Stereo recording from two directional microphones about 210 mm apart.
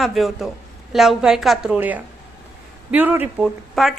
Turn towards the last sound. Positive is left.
turn(degrees=0)  # may be behind; listen again after turning